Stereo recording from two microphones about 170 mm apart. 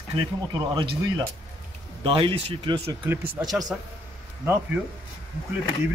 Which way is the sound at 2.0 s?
30° right (ahead or behind).